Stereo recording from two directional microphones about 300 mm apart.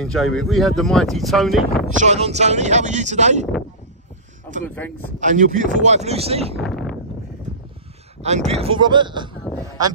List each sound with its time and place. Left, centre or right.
0.0 s speech: centre
2.0 s speech: right
4.6 s speech: centre
5.2 s speech: right
6.6 s speech: centre
8.2 s speech: right